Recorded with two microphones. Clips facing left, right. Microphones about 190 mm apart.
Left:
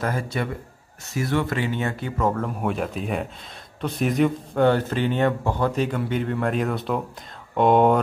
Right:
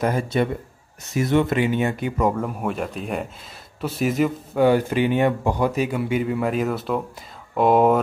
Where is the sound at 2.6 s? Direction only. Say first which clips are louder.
Left 1 dB; centre (ahead or behind).